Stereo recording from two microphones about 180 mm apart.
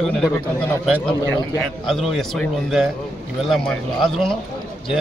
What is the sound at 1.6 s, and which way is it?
A man's voice, centre (ahead or behind).